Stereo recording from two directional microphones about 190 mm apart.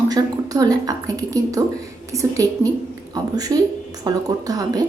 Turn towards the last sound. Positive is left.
turn(degrees=-20)  # may be behind; listen again after turning